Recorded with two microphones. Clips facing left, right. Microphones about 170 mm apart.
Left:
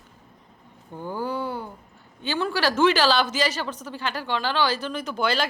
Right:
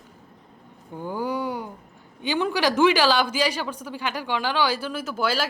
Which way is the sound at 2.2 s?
15° right (ahead or behind).